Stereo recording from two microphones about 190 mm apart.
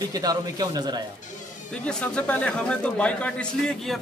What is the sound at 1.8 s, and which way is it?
Speech, 5° left (ahead or behind).